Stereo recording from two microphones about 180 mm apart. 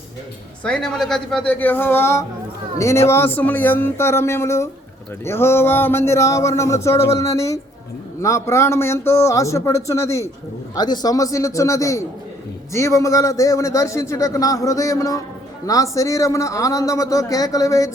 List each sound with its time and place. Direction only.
0.6 s a man's voice: 5° left (ahead or behind)